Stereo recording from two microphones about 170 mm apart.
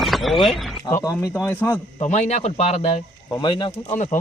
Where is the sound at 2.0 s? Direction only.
40° left (ahead or behind).